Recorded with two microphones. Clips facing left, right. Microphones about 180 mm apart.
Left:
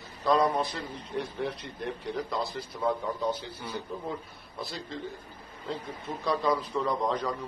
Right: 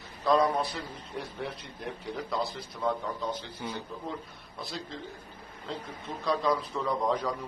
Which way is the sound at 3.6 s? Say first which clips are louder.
Even; 20° right (ahead or behind).